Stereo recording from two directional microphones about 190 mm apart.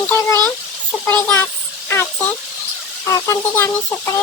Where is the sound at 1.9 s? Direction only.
10° left (ahead or behind).